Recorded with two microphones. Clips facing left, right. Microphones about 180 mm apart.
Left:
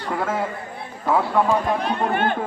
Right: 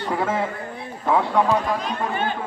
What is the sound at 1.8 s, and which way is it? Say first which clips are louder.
Speech: left 3 dB; 60° left (ahead or behind).